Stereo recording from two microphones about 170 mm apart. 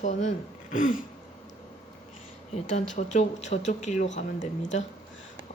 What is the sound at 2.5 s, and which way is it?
Speech, 45° left (ahead or behind).